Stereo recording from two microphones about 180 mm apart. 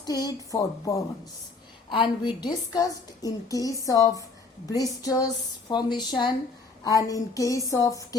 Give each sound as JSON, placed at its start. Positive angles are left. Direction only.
{"t": 0.0, "sound": "a woman's voice", "side_deg": 20}